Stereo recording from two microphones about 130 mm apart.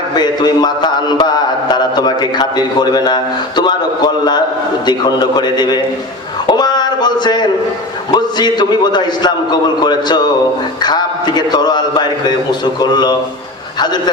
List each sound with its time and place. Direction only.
0.2 s mantra: 35° left (ahead or behind)
6.5 s speech: 35° left (ahead or behind)
8.1 s mantra: 35° left (ahead or behind)
13.7 s a man's voice: 35° left (ahead or behind)